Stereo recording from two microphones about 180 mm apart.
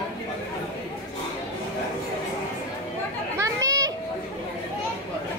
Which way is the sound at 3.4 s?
20° right (ahead or behind).